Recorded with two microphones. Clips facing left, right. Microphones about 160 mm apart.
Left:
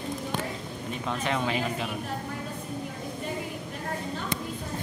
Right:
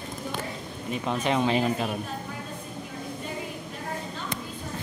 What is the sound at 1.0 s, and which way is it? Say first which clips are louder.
Speech: right 4 dB; 20° right (ahead or behind).